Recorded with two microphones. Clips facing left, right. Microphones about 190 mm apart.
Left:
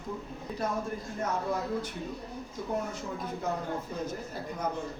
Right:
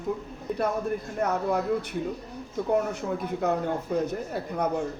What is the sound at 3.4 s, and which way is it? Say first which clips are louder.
A man's voice: right 7 dB; 65° right (ahead or behind).